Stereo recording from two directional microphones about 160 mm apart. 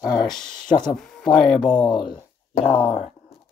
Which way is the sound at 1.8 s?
30° left (ahead or behind).